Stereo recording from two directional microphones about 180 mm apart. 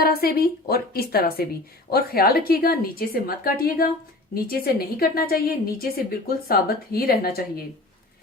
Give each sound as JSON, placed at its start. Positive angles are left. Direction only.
{"t": 0.0, "sound": "a woman's voice", "side_deg": 60}